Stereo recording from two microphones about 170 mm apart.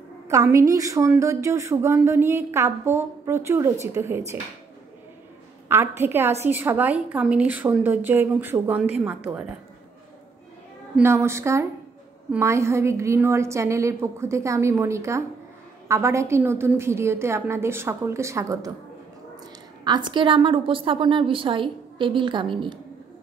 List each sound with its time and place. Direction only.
0.3 s a woman's voice: 20° right (ahead or behind)
5.7 s a woman's voice: 15° right (ahead or behind)
11.0 s a woman's voice: 15° right (ahead or behind)
19.8 s a woman's voice: 25° right (ahead or behind)